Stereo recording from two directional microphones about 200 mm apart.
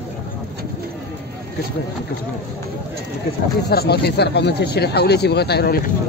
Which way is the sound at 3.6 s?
55° left (ahead or behind).